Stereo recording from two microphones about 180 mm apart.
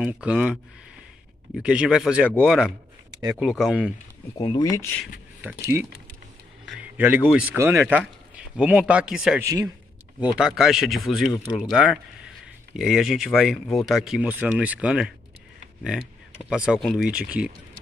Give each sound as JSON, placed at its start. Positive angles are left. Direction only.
{"t": 0.2, "sound": "a man's voice", "side_deg": -5}
{"t": 4.4, "sound": "speech", "side_deg": 20}
{"t": 5.4, "sound": "a man's voice", "side_deg": -10}
{"t": 9.4, "sound": "a man's voice", "side_deg": -20}
{"t": 10.2, "sound": "speech", "side_deg": -5}